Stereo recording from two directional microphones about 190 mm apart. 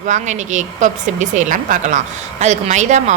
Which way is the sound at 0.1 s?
40° right (ahead or behind).